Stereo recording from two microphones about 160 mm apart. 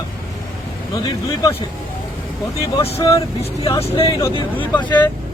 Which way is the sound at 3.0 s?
20° left (ahead or behind).